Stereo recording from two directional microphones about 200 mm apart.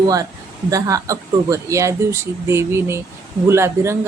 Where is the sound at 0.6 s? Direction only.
15° right (ahead or behind).